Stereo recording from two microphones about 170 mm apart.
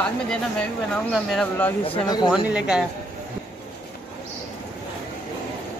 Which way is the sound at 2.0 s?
25° left (ahead or behind).